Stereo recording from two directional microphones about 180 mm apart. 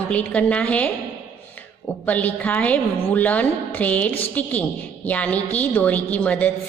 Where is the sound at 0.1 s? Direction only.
10° left (ahead or behind).